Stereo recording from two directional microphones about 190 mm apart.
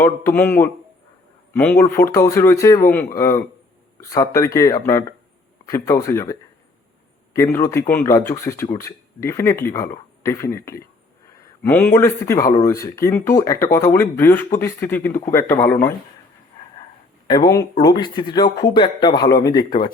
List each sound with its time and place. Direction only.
0.0 s speech: 15° left (ahead or behind)
7.3 s speech: 15° left (ahead or behind)
17.2 s speech: 20° left (ahead or behind)